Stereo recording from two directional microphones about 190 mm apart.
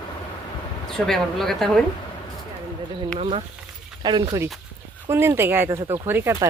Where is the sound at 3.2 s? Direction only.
30° right (ahead or behind); by 6.5 s 10° right (ahead or behind).